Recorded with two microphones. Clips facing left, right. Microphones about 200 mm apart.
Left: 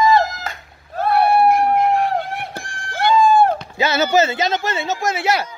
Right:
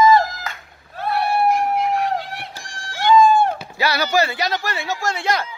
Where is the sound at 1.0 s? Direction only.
50° left (ahead or behind).